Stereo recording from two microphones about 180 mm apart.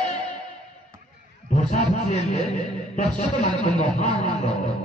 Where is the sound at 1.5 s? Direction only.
40° left (ahead or behind).